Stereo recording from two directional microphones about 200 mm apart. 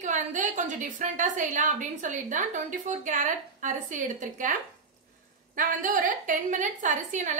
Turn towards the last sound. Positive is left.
turn(degrees=-40)  # may be behind; listen again after turning